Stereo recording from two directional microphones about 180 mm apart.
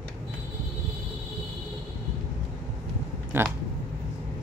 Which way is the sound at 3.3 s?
10° right (ahead or behind).